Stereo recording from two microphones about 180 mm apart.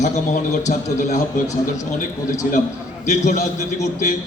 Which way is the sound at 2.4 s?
50° left (ahead or behind).